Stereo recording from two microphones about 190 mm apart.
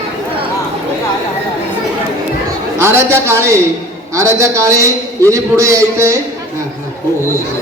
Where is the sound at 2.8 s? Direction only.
15° right (ahead or behind).